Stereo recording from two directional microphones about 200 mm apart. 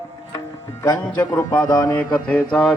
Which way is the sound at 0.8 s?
20° left (ahead or behind).